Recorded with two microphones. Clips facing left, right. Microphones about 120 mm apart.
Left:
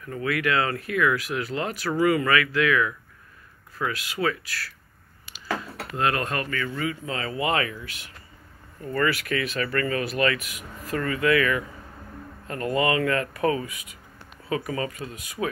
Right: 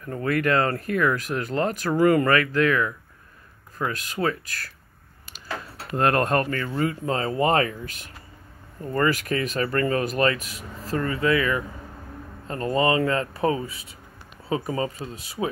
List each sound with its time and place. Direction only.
0.1 s speech: 40° right (ahead or behind)
3.9 s speech: 40° right (ahead or behind)
5.9 s speech: 45° right (ahead or behind); by 15.4 s 30° right (ahead or behind)